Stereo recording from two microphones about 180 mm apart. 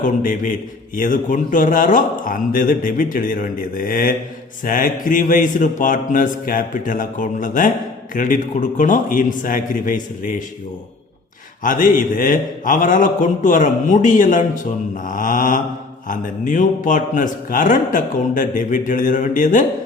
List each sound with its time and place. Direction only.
0.0 s a man's voice: 50° left (ahead or behind)
11.6 s a man's voice: 50° left (ahead or behind)